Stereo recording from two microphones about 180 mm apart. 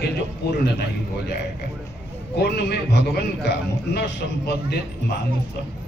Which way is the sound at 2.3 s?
65° left (ahead or behind).